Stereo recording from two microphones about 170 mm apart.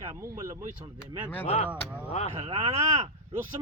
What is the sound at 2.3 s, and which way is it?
Speech, 35° right (ahead or behind).